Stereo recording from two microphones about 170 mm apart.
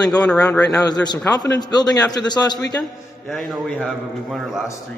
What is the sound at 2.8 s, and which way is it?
A man's voice, centre (ahead or behind).